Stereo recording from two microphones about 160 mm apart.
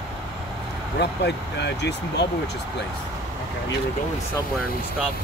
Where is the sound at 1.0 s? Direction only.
90° left.